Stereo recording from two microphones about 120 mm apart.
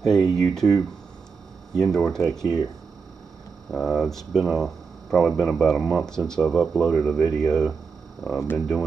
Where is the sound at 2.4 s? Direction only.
35° left (ahead or behind).